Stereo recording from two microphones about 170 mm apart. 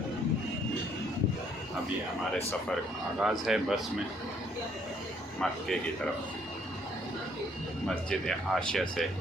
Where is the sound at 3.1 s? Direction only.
5° right (ahead or behind).